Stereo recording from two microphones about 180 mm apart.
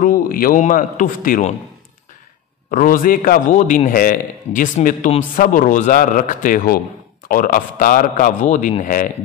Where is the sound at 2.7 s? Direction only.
50° left (ahead or behind).